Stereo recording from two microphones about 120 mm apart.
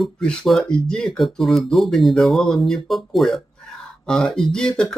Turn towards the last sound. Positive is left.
turn(degrees=5)  # may be behind; listen again after turning